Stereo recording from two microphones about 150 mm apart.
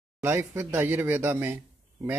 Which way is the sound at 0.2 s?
15° right (ahead or behind).